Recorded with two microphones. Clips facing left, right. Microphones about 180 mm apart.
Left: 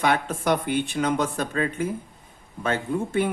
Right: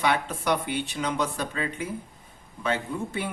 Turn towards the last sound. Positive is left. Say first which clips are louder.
# left 7 dB
turn(degrees=50)  # may be behind; listen again after turning